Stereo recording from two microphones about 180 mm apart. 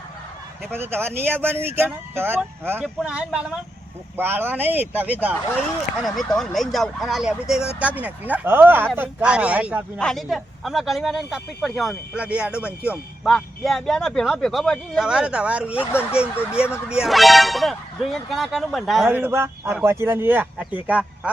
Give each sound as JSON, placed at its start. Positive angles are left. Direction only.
{"t": 0.7, "sound": "speech", "side_deg": -10}
{"t": 15.8, "sound": "speech", "side_deg": 10}
{"t": 16.5, "sound": "speech", "side_deg": -5}